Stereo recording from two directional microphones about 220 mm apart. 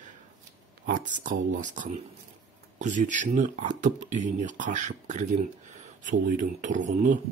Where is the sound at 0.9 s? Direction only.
35° right (ahead or behind).